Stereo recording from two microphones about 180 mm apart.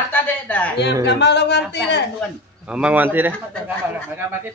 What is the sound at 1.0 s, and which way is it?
Speech, 70° left (ahead or behind).